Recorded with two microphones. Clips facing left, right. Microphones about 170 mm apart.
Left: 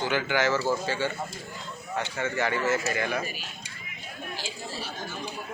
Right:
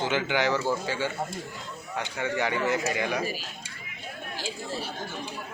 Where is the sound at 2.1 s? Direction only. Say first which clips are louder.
Right 1 dB; 15° right (ahead or behind).